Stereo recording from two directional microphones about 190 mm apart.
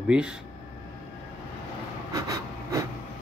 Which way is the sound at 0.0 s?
5° right (ahead or behind).